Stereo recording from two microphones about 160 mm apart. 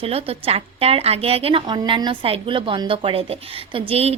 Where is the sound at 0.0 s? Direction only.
40° right (ahead or behind).